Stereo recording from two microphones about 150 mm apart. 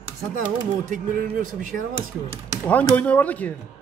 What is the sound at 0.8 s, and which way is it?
Speech, 60° right (ahead or behind).